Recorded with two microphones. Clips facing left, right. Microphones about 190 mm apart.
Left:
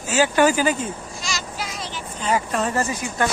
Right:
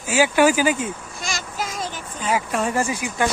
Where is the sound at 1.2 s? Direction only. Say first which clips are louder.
Right 4 dB; 50° right (ahead or behind).